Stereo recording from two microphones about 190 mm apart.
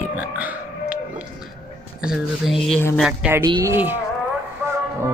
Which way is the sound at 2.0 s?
Centre (ahead or behind).